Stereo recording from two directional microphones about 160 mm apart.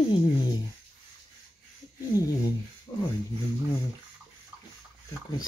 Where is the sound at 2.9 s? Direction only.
15° left (ahead or behind).